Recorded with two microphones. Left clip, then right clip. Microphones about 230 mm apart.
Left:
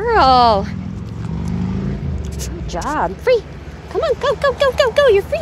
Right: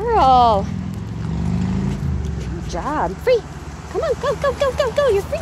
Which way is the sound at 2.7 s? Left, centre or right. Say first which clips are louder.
Left 2 dB; centre.